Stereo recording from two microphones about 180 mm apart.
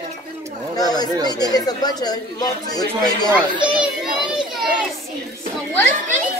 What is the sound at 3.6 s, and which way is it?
Children playing, 5° right (ahead or behind).